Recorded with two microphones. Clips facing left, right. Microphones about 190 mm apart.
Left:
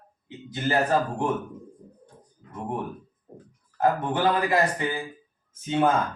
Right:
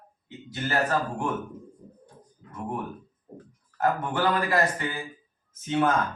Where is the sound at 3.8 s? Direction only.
15° left (ahead or behind).